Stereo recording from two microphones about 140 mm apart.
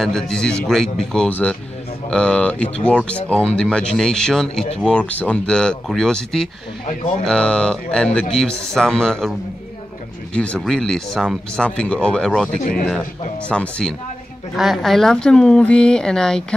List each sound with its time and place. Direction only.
0.0 s speech: 5° left (ahead or behind)
10.3 s speech: 10° left (ahead or behind)
12.5 s a man's voice: 80° left
13.5 s speech: 5° left (ahead or behind)